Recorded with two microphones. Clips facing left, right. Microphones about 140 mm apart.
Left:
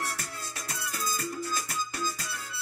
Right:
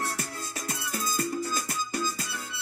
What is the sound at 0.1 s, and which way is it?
Music, 25° right (ahead or behind).